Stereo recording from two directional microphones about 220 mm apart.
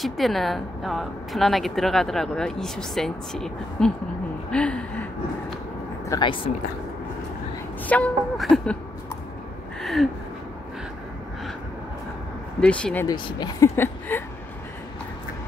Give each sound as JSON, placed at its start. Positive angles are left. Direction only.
{"t": 0.0, "sound": "a woman's voice", "side_deg": 0}
{"t": 4.5, "sound": "a sound", "side_deg": 5}
{"t": 6.0, "sound": "speech", "side_deg": 20}
{"t": 7.8, "sound": "a woman's voice", "side_deg": 5}
{"t": 9.8, "sound": "a sound", "side_deg": 0}
{"t": 12.5, "sound": "a woman's voice", "side_deg": 5}
{"t": 13.0, "sound": "speech", "side_deg": 15}